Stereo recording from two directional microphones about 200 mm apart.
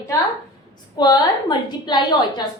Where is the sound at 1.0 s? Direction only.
20° left (ahead or behind).